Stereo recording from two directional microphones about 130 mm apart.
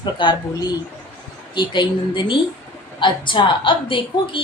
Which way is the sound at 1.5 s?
35° left (ahead or behind).